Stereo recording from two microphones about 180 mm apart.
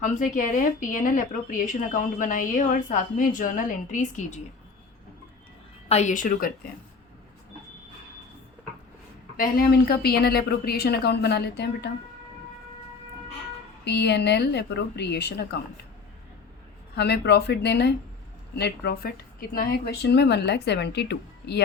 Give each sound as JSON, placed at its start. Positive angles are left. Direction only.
{"t": 0.0, "sound": "speech", "side_deg": 45}
{"t": 5.9, "sound": "speech", "side_deg": 40}
{"t": 9.4, "sound": "a woman's voice", "side_deg": 60}
{"t": 13.8, "sound": "a woman's voice", "side_deg": 65}
{"t": 16.9, "sound": "a woman's voice", "side_deg": 65}